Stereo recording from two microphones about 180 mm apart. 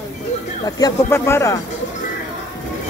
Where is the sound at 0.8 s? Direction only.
15° left (ahead or behind).